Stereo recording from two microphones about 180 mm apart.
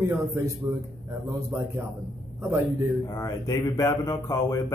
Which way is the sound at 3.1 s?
20° left (ahead or behind).